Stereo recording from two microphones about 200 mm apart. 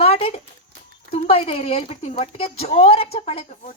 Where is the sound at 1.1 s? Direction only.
30° left (ahead or behind).